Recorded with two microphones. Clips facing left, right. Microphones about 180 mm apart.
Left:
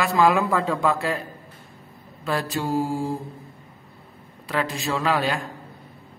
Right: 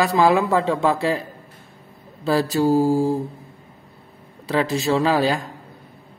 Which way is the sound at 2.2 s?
35° right (ahead or behind).